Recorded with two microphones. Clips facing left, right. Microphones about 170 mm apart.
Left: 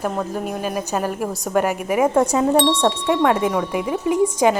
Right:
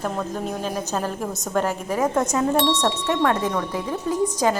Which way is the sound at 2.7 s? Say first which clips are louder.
Left 3 dB; 30° left (ahead or behind).